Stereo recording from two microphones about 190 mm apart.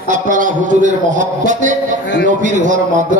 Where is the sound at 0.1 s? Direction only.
45° right (ahead or behind).